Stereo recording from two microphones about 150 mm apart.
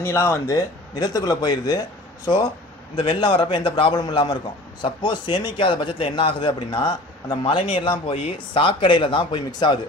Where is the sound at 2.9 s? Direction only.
35° left (ahead or behind).